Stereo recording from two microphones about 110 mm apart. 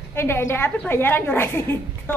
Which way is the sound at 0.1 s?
20° left (ahead or behind).